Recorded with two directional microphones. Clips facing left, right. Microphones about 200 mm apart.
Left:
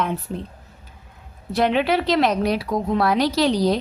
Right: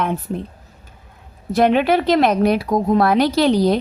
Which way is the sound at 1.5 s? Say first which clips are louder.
Right 4 dB; 50° right (ahead or behind).